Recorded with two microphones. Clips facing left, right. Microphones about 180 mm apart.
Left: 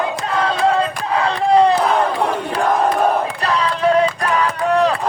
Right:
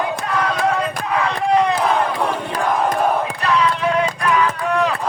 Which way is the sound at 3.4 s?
35° left (ahead or behind).